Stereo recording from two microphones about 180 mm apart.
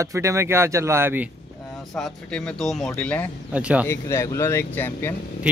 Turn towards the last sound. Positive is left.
turn(degrees=10)  # may be behind; listen again after turning